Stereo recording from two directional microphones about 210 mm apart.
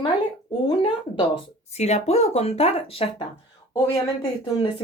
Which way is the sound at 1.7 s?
30° left (ahead or behind).